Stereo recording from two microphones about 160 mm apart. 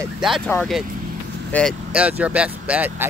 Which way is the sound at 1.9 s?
10° right (ahead or behind).